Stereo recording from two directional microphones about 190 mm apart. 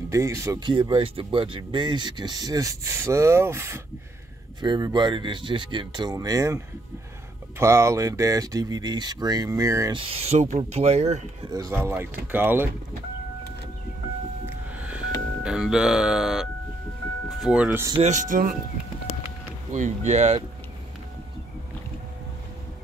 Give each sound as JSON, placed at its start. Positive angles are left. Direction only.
{"t": 0.1, "sound": "speech", "side_deg": -15}
{"t": 10.0, "sound": "speech", "side_deg": -35}
{"t": 11.5, "sound": "speech", "side_deg": -15}
{"t": 14.4, "sound": "music", "side_deg": -5}
{"t": 17.4, "sound": "speech", "side_deg": -5}
{"t": 17.9, "sound": "speech", "side_deg": -40}
{"t": 19.7, "sound": "speech", "side_deg": -40}